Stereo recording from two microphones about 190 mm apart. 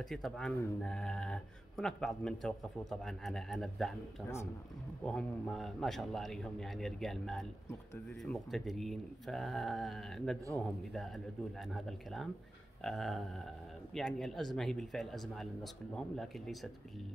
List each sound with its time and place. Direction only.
0.0 s a man's voice: centre (ahead or behind)
5.0 s a man's voice: 5° left (ahead or behind)
11.7 s a man's voice: centre (ahead or behind)